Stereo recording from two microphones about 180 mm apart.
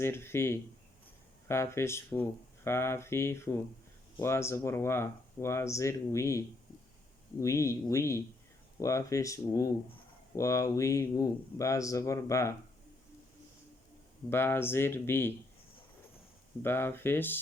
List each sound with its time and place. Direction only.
0.0 s speech: 15° left (ahead or behind)
14.3 s speech: 15° left (ahead or behind)
16.6 s speech: 10° left (ahead or behind)